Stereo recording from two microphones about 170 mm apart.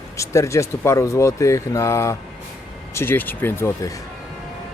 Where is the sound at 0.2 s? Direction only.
15° left (ahead or behind).